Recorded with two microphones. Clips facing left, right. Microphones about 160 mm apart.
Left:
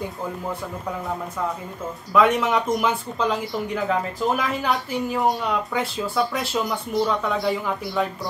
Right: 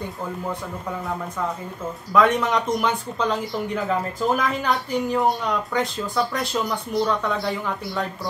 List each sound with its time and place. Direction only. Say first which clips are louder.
2.1 s speech: even; centre (ahead or behind)